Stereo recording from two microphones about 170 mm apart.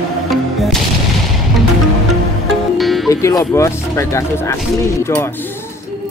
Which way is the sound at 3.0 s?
20° left (ahead or behind).